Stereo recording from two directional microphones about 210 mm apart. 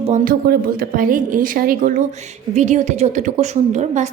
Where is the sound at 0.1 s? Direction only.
40° right (ahead or behind).